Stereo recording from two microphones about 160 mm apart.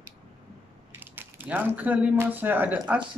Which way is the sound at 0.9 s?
10° right (ahead or behind).